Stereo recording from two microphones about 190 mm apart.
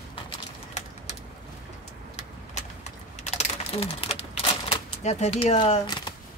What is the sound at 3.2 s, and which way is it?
Typewriter, 35° left (ahead or behind).